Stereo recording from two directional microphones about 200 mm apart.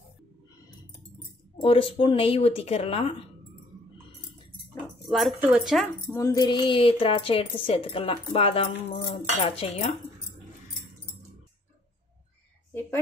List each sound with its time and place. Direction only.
1.6 s speech: 25° left (ahead or behind)
5.0 s speech: centre (ahead or behind)
6.1 s speech: 15° left (ahead or behind)